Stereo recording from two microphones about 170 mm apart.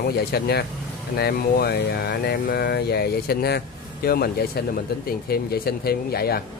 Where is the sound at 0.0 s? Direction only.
70° left (ahead or behind).